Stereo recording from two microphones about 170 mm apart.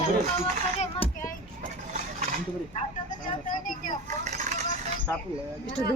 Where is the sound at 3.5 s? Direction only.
50° left (ahead or behind).